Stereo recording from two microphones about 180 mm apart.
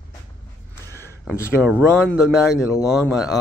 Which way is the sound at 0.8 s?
15° right (ahead or behind).